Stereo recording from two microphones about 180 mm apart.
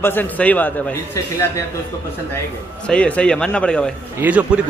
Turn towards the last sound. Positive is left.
turn(degrees=-10)  # may be behind; listen again after turning